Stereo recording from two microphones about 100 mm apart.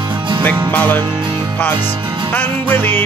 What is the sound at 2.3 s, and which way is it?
Music, 20° left (ahead or behind).